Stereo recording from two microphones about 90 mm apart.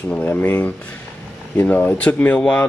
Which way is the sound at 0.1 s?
20° left (ahead or behind).